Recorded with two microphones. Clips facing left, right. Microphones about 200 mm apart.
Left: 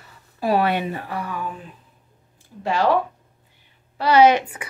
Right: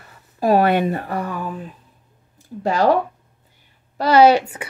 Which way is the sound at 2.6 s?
40° right (ahead or behind).